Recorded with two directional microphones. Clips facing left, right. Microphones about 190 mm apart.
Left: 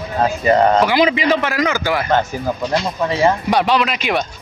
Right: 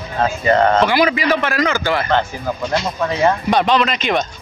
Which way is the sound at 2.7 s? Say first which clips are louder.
Even; centre (ahead or behind).